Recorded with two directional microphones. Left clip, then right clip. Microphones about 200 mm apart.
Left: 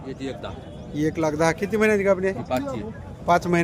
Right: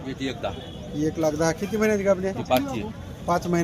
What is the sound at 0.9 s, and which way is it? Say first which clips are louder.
Speech: left 1 dB; 25° left (ahead or behind).